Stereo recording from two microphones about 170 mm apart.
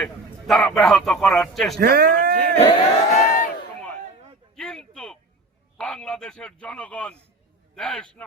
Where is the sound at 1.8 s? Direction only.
65° right (ahead or behind).